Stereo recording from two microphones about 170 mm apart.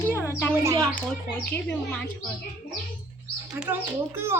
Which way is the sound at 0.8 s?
10° left (ahead or behind).